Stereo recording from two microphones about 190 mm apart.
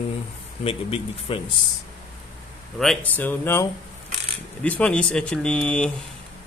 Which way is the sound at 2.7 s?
5° left (ahead or behind).